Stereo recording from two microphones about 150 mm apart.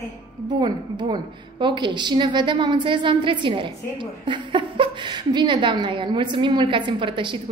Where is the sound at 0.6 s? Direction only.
30° right (ahead or behind).